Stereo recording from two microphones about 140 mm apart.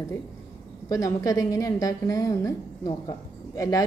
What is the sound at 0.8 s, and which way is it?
A woman's voice, 25° left (ahead or behind).